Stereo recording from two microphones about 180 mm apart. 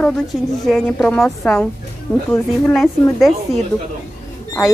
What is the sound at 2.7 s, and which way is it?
Speech, centre (ahead or behind).